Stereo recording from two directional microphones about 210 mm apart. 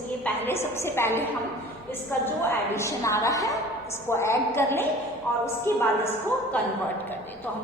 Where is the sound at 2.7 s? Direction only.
15° left (ahead or behind).